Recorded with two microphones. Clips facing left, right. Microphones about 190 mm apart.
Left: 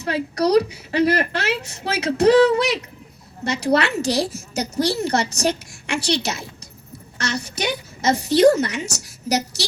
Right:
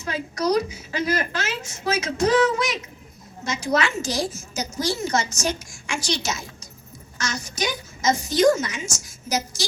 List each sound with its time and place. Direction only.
0.0 s a woman's voice: 65° left (ahead or behind)